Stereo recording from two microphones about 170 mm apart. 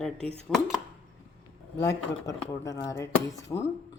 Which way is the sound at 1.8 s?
20° left (ahead or behind).